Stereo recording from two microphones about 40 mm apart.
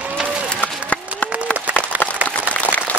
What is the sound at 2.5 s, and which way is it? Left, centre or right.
Applause, left.